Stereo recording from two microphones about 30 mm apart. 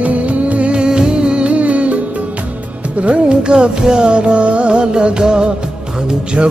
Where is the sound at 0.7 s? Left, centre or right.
Right.